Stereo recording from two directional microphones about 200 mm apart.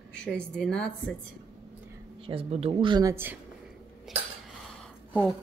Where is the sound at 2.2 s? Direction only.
25° right (ahead or behind).